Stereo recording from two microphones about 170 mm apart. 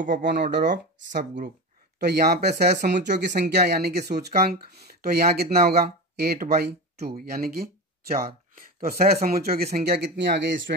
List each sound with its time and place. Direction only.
0.0 s speech: 50° right (ahead or behind)
0.3 s speech: 75° right (ahead or behind)
2.0 s speech: 70° right (ahead or behind)
3.0 s speech: 90° right